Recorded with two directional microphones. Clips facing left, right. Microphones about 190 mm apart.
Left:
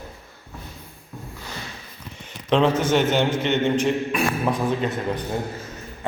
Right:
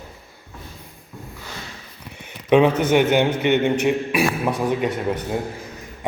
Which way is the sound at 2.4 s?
10° right (ahead or behind).